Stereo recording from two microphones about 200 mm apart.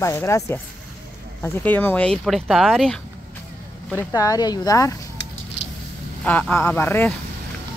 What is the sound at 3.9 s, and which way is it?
Speech, 15° left (ahead or behind).